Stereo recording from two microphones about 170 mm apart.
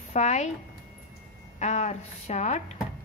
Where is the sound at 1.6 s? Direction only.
45° left (ahead or behind).